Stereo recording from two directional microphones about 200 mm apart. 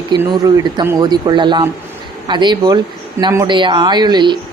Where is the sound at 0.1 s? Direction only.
20° right (ahead or behind).